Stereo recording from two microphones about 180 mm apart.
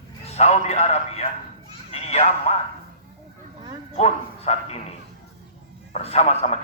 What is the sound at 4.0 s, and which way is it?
Speech, 35° left (ahead or behind).